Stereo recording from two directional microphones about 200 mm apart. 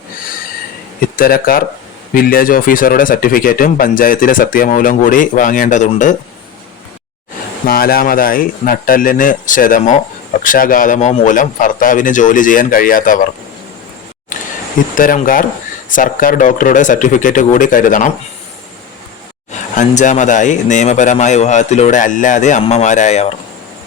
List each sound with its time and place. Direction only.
1.1 s speech: 45° left (ahead or behind)
7.7 s speech: 50° left (ahead or behind)
14.9 s speech: 45° left (ahead or behind)
19.5 s speech: 35° left (ahead or behind)